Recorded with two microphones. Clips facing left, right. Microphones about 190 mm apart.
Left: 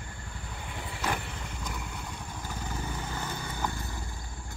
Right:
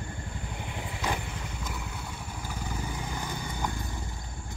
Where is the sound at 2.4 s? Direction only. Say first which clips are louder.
Right 1 dB; 10° right (ahead or behind).